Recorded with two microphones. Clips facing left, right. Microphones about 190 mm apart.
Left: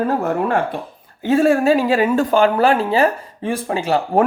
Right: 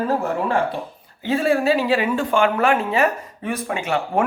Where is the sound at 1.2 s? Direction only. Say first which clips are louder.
Left 5 dB; 45° left (ahead or behind).